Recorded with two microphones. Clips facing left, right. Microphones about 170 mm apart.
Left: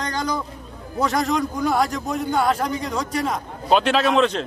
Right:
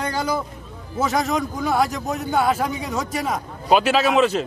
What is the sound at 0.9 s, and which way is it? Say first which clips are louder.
A man's voice: even; centre (ahead or behind).